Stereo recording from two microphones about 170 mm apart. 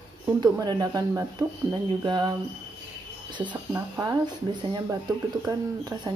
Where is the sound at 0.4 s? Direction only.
25° right (ahead or behind).